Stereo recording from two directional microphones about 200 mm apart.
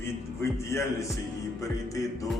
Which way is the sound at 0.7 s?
15° left (ahead or behind).